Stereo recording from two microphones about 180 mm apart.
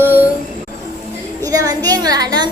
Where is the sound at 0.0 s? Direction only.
10° right (ahead or behind).